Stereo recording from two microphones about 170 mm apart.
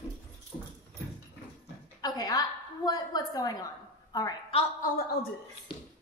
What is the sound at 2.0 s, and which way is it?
A woman's voice, 20° left (ahead or behind).